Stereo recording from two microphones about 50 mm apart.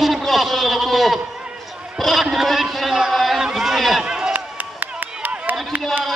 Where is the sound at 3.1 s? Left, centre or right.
Centre.